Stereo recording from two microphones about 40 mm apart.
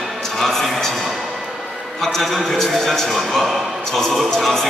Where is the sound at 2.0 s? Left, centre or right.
Centre.